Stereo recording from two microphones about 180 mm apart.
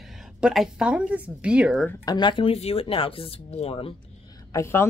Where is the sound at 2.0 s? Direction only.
25° left (ahead or behind).